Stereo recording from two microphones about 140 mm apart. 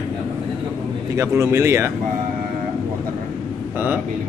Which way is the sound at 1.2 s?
20° right (ahead or behind).